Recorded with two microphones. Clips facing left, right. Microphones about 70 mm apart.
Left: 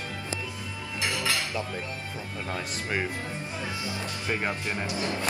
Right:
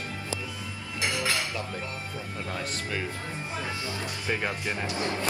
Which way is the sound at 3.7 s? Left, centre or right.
Left.